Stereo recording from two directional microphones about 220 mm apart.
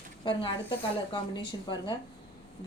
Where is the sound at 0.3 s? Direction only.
20° left (ahead or behind).